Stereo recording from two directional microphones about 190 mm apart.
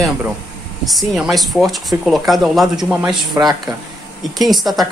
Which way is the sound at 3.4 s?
15° right (ahead or behind).